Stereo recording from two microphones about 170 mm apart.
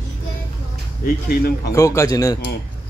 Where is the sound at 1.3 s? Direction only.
65° left (ahead or behind).